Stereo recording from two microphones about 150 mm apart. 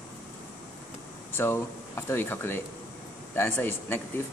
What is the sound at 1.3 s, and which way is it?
Speech, 15° left (ahead or behind).